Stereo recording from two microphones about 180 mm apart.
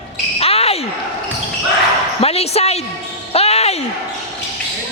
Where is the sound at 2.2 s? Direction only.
35° left (ahead or behind).